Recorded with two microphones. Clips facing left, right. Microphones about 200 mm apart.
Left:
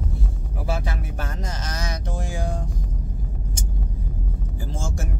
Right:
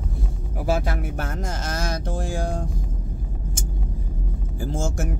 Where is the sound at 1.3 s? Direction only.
50° right (ahead or behind).